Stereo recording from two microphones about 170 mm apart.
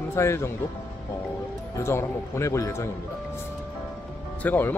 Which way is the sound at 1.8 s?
15° left (ahead or behind).